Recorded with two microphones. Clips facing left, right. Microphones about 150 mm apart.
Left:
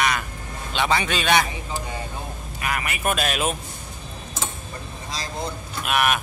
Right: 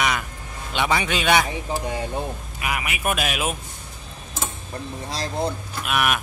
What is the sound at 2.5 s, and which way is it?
A man's voice, 10° right (ahead or behind).